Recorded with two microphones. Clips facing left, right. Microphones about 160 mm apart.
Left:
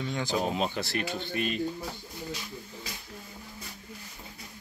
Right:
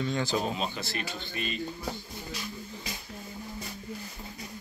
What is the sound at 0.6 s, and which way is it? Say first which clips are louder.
Speech: left 4 dB; 65° left (ahead or behind).